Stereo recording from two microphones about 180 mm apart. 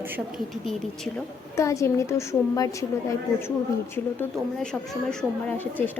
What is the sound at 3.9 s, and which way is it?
A woman's voice, 10° left (ahead or behind).